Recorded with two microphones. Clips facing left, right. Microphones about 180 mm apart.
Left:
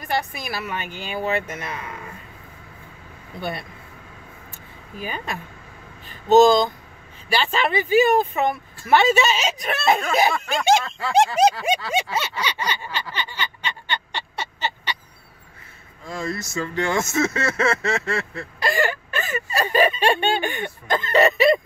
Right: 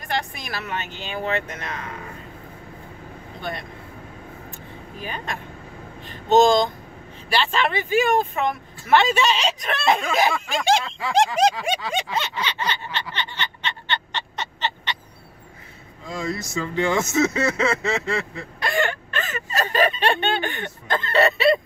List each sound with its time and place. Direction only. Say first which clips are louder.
0.0 s speech: left 2 dB; 5° left (ahead or behind)
3.3 s speech: left 2 dB; 10° left (ahead or behind)
5.0 s speech: left 2 dB; 5° left (ahead or behind)
11.0 s speech: left 2 dB; 15° right (ahead or behind)
11.9 s a sound: left 2 dB; 10° left (ahead or behind)
16.1 s speech: right 1 dB; 15° right (ahead or behind)
18.6 s a sound: left 1 dB; centre (ahead or behind)